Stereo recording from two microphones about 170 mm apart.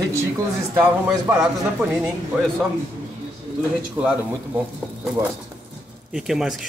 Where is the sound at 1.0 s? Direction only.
5° right (ahead or behind).